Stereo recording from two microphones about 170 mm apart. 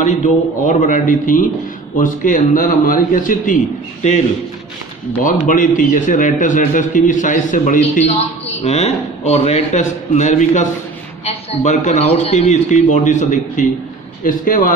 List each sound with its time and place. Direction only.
0.0 s a man's voice: 45° left (ahead or behind)
5.2 s a man's voice: 50° left (ahead or behind)